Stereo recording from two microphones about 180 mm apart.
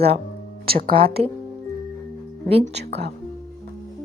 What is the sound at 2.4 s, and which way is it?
Speech, 35° right (ahead or behind).